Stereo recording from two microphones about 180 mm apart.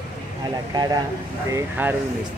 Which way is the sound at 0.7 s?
20° right (ahead or behind).